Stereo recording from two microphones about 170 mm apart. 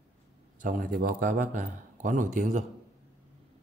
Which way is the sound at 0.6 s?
50° right (ahead or behind).